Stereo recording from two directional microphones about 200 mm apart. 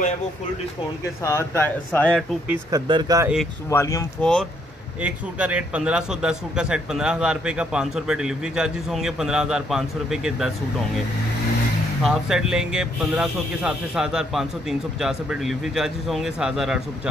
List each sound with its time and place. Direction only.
1.2 s speech: 15° left (ahead or behind)
2.7 s speech: 20° right (ahead or behind)
3.7 s speech: 15° left (ahead or behind)
5.0 s a man's voice: 5° right (ahead or behind)
12.0 s a man's voice: 5° right (ahead or behind)